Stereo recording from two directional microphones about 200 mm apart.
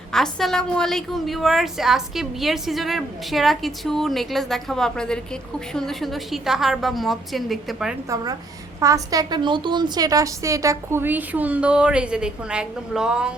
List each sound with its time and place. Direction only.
0.1 s a woman's voice: centre (ahead or behind)
8.1 s a woman's voice: 20° right (ahead or behind)